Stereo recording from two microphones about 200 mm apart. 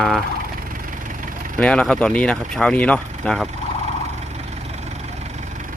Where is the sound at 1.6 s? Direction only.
5° left (ahead or behind).